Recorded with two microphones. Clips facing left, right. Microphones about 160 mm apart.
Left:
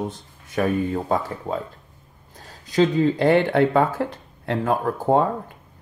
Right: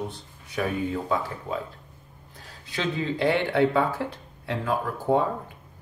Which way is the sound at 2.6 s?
40° left (ahead or behind).